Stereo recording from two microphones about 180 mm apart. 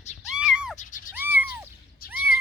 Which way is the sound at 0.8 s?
45° left (ahead or behind).